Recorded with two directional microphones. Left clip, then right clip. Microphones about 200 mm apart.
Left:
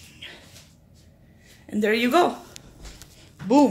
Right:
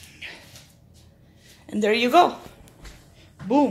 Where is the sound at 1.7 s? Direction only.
5° left (ahead or behind).